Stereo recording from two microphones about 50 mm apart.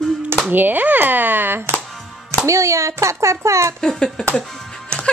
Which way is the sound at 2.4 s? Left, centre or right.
Right.